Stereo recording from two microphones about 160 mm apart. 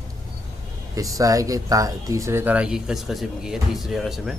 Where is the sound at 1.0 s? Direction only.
20° right (ahead or behind); by 4.3 s centre (ahead or behind).